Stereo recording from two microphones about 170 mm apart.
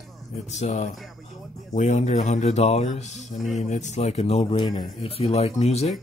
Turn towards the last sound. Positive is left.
turn(degrees=40)  # may be behind; listen again after turning